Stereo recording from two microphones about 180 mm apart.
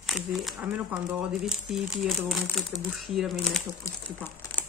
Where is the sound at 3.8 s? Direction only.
15° left (ahead or behind).